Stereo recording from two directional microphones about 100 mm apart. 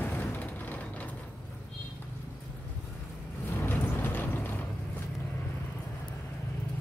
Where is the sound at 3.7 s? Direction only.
20° left (ahead or behind).